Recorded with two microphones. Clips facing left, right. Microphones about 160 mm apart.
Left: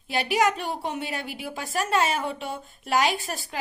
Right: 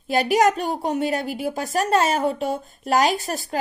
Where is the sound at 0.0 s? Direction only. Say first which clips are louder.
Right 5 dB; 40° right (ahead or behind).